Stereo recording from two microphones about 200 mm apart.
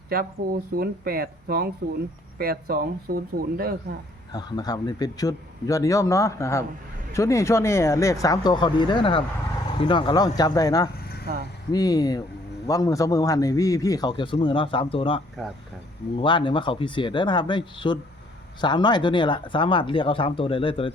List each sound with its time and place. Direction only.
0.4 s speech: 50° right (ahead or behind)
4.3 s a man's voice: 20° left (ahead or behind)